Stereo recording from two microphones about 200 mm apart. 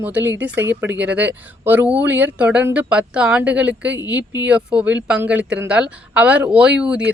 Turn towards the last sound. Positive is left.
turn(degrees=-5)  # may be behind; listen again after turning